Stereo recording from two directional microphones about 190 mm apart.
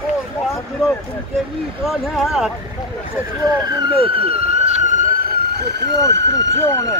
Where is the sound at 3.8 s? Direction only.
30° right (ahead or behind); by 6.3 s 65° right (ahead or behind).